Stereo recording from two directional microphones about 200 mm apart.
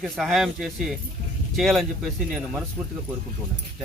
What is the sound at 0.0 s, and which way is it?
Speech, centre (ahead or behind).